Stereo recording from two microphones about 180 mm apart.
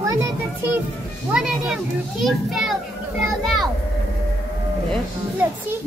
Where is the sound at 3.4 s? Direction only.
Centre (ahead or behind).